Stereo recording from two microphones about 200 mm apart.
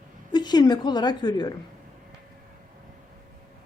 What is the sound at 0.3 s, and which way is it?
A woman's voice, 20° left (ahead or behind).